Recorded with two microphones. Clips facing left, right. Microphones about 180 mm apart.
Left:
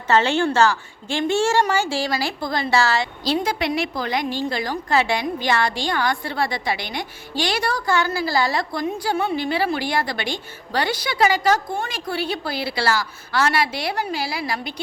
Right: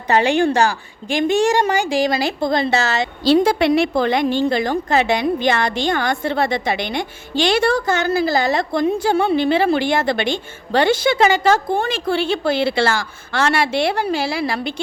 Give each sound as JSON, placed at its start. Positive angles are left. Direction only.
{"t": 0.1, "sound": "a woman's voice", "side_deg": -15}